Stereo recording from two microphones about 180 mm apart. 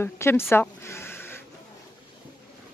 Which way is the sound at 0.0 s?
15° left (ahead or behind).